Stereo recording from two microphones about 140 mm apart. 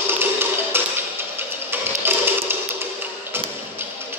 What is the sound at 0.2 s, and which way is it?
Tap, 15° right (ahead or behind).